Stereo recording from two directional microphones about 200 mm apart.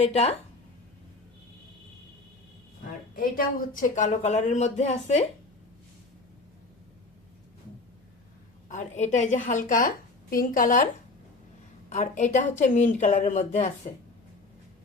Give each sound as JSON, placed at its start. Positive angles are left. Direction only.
{"t": 0.0, "sound": "a woman's voice", "side_deg": 30}
{"t": 3.2, "sound": "a woman's voice", "side_deg": 45}
{"t": 8.7, "sound": "a woman's voice", "side_deg": 35}
{"t": 11.9, "sound": "a woman's voice", "side_deg": 35}